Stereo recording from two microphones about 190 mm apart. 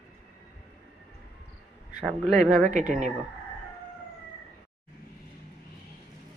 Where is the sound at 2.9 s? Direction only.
40° right (ahead or behind).